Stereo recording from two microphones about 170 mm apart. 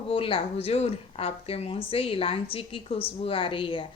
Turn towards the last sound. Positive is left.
turn(degrees=30)  # may be behind; listen again after turning